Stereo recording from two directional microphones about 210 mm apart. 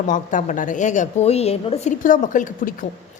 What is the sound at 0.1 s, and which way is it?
A woman's voice, 40° left (ahead or behind).